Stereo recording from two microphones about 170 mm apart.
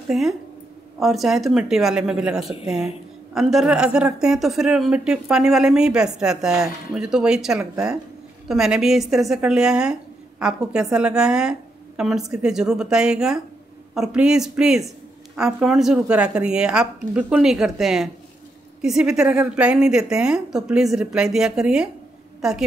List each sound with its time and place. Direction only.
0.1 s a woman's voice: 5° right (ahead or behind)